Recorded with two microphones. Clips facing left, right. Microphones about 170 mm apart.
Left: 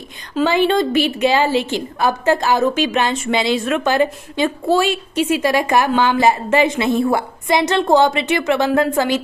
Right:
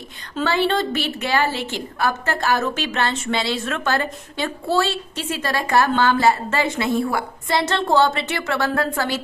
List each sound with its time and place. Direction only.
0.4 s a woman's voice: 15° left (ahead or behind)